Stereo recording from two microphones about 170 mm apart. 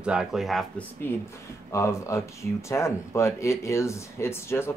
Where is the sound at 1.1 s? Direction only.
15° left (ahead or behind).